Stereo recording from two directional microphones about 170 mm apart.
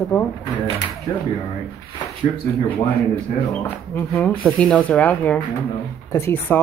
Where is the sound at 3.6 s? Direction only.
10° left (ahead or behind).